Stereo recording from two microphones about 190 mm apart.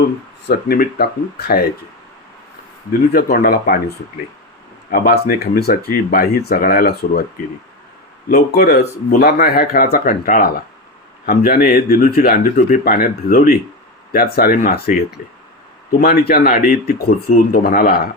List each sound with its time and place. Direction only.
0.4 s speech: 55° left (ahead or behind)
3.1 s speech: 55° left (ahead or behind)
8.3 s speech: 55° left (ahead or behind)